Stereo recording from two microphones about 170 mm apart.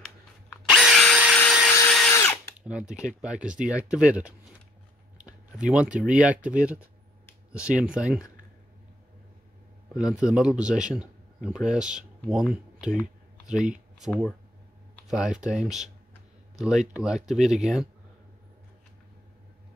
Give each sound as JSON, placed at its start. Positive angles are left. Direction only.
{"t": 0.7, "sound": "drill", "side_deg": 0}
{"t": 1.7, "sound": "drill", "side_deg": 15}
{"t": 2.6, "sound": "a man's voice", "side_deg": -5}
{"t": 9.9, "sound": "a man's voice", "side_deg": -5}